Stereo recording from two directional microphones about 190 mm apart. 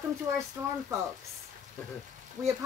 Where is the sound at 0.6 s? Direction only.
10° right (ahead or behind).